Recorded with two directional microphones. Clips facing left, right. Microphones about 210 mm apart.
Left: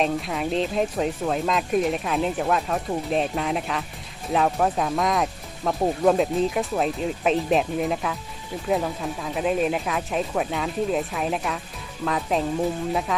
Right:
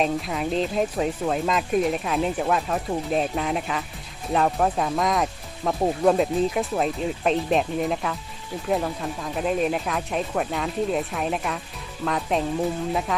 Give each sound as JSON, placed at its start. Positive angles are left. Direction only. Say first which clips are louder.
{"t": 0.0, "sound": "speech", "louder": "even", "side_deg": 0}